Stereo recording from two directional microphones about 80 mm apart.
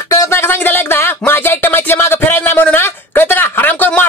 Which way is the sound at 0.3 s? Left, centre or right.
Left.